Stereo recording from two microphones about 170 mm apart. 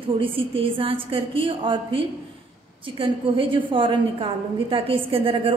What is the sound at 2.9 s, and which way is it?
A woman's voice, 30° right (ahead or behind).